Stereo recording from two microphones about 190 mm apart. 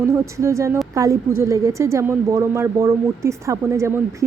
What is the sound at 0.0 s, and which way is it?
A woman's voice, 15° right (ahead or behind).